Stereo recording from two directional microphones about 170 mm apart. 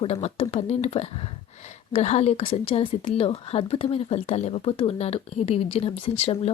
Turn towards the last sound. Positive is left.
turn(degrees=35)  # may be behind; listen again after turning